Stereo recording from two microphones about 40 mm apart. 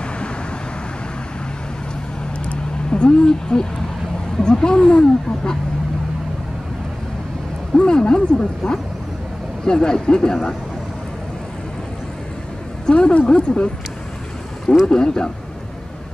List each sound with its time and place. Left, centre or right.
2.4 s a sound: left
4.4 s speech: centre
7.7 s speech: left
12.8 s speech: left
14.9 s speech: centre